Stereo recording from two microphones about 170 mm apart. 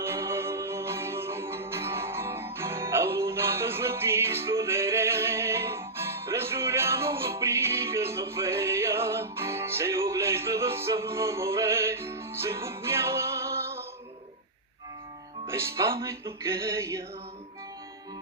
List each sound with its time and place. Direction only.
0.0 s music: 15° right (ahead or behind)
15.4 s music: 15° right (ahead or behind)